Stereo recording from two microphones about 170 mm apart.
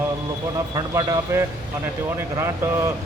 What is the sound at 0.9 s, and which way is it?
A man's voice, 15° right (ahead or behind).